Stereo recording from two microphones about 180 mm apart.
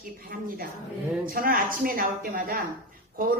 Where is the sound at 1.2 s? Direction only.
50° right (ahead or behind).